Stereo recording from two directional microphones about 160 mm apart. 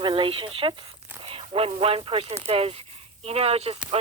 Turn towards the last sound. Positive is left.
turn(degrees=-40)  # may be behind; listen again after turning